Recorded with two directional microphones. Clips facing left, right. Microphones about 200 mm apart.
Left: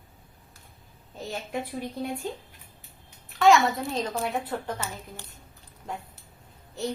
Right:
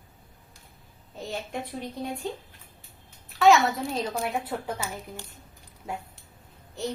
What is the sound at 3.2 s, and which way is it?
A child's voice, centre (ahead or behind).